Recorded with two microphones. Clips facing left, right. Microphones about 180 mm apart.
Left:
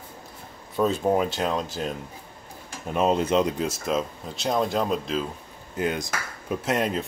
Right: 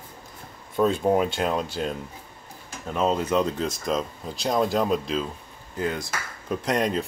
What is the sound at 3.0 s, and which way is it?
Speech, 20° left (ahead or behind).